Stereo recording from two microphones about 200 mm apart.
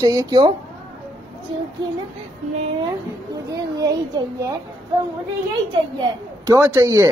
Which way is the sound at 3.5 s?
20° right (ahead or behind).